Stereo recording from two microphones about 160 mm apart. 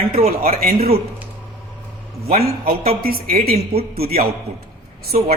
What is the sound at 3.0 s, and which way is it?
A woman's voice, 70° right (ahead or behind).